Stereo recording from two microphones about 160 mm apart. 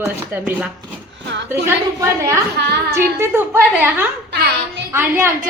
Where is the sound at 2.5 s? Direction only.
90° right.